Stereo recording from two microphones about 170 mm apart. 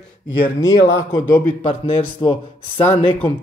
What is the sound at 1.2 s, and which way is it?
Speech, 10° left (ahead or behind).